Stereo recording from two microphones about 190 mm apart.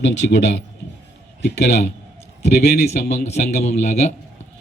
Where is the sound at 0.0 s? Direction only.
70° left (ahead or behind).